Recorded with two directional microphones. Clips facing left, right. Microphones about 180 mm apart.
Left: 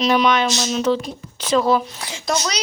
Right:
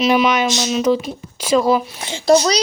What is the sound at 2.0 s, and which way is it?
Speech, 30° right (ahead or behind).